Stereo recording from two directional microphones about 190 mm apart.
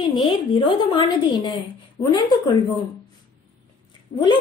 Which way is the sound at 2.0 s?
15° left (ahead or behind).